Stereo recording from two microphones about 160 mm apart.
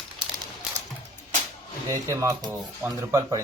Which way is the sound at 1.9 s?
20° right (ahead or behind).